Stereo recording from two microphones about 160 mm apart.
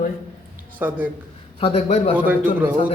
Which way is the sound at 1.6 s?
40° left (ahead or behind).